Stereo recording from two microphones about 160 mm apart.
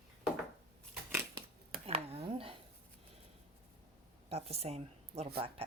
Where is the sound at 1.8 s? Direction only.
35° right (ahead or behind).